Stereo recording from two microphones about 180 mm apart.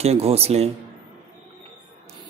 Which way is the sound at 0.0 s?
35° right (ahead or behind).